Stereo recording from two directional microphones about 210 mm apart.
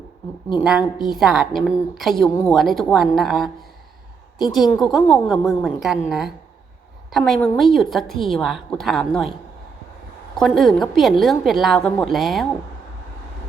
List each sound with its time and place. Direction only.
0.6 s a woman's voice: 5° right (ahead or behind)
10.3 s a woman's voice: centre (ahead or behind)